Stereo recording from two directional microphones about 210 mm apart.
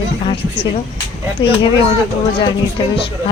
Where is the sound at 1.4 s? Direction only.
25° left (ahead or behind).